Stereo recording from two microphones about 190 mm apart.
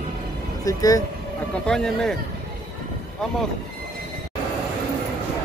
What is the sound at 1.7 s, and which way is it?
Speech, 5° left (ahead or behind).